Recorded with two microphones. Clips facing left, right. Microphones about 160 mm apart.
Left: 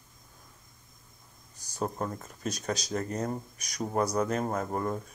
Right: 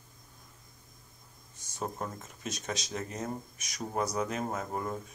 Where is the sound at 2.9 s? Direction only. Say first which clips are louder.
Left 7 dB; 40° left (ahead or behind).